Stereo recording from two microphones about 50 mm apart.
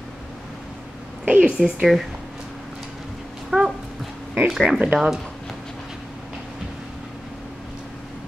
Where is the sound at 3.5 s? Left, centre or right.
Centre.